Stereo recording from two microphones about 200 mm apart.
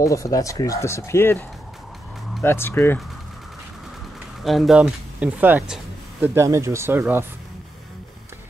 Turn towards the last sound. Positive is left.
turn(degrees=-10)  # may be behind; listen again after turning